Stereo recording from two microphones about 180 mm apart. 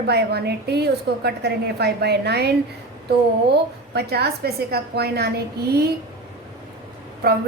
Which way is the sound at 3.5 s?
65° right (ahead or behind).